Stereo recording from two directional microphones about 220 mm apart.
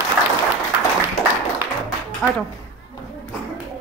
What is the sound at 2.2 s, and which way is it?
Speech, 10° left (ahead or behind).